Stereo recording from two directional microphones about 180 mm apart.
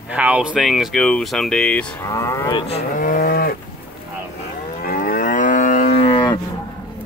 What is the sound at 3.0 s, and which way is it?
Cattle, 50° left (ahead or behind).